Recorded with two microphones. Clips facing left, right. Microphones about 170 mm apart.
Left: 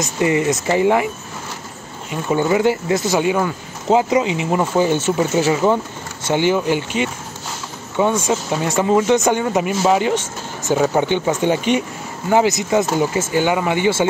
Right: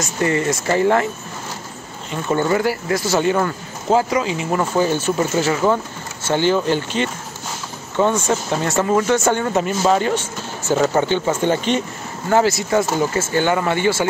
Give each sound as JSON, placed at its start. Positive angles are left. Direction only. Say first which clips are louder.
{"t": 0.0, "sound": "speech", "louder": "left 2 dB", "side_deg": 15}
{"t": 2.6, "sound": "speech", "louder": "left 3 dB", "side_deg": 20}
{"t": 3.2, "sound": "speech", "louder": "even", "side_deg": 10}